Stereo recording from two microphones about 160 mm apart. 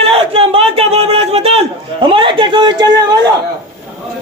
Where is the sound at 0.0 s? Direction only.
35° right (ahead or behind).